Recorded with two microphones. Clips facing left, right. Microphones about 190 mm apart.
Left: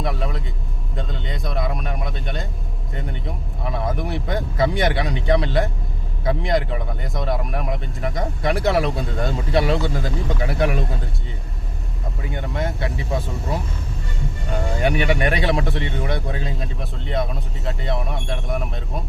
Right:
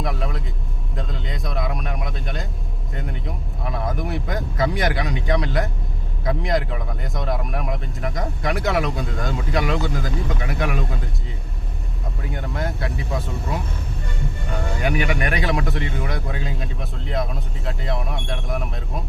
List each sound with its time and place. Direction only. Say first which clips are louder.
0.0 s vehicle: left 1 dB; centre (ahead or behind)
0.9 s speech: left 1 dB; centre (ahead or behind)
4.7 s speech: left 2 dB; 25° left (ahead or behind)
6.2 s speech: left 2 dB; centre (ahead or behind)
8.4 s speech: left 3 dB; 30° left (ahead or behind)
12.2 s speech: left 2 dB; centre (ahead or behind)
14.8 s speech: left 3 dB; 30° left (ahead or behind)
17.1 s speech: left 2 dB; centre (ahead or behind)